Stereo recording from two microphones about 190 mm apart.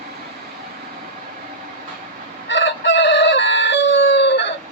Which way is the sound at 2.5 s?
70° left (ahead or behind).